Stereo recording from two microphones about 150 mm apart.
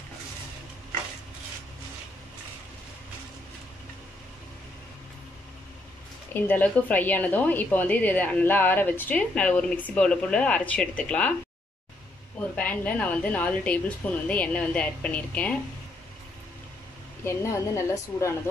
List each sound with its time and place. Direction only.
6.3 s a woman's voice: 15° left (ahead or behind)
12.4 s a woman's voice: 10° left (ahead or behind)
17.2 s a woman's voice: 20° left (ahead or behind)